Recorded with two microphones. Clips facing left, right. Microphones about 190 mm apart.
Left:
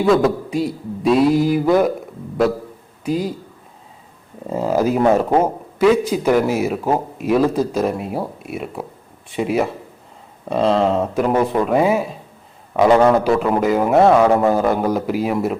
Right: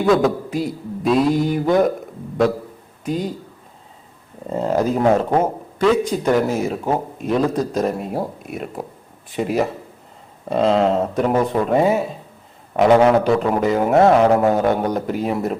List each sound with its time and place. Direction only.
0.0 s speech: centre (ahead or behind)
3.0 s a man's voice: 5° left (ahead or behind)
4.4 s speech: 5° left (ahead or behind)